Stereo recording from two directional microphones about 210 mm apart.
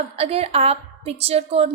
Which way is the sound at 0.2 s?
30° right (ahead or behind).